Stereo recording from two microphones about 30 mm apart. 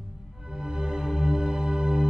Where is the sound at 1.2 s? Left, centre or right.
Right.